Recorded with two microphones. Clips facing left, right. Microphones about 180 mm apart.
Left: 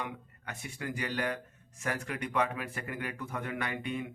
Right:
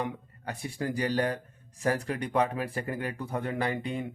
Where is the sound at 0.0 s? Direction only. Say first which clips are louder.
Right 6 dB; 35° right (ahead or behind).